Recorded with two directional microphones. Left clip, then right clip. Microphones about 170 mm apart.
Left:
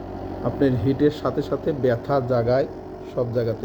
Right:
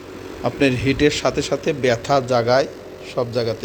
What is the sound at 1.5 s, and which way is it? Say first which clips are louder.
Speech: right 1 dB; 40° right (ahead or behind).